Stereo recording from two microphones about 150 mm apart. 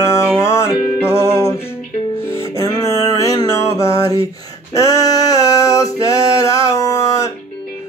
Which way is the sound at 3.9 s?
35° right (ahead or behind).